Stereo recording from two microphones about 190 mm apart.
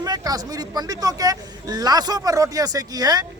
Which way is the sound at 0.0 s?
20° right (ahead or behind).